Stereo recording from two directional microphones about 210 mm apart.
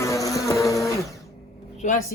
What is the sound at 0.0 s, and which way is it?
Vehicle, 15° left (ahead or behind).